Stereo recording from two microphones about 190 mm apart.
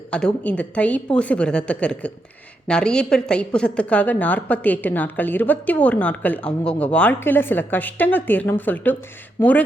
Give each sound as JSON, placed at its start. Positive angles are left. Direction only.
{"t": 0.1, "sound": "a woman's voice", "side_deg": 5}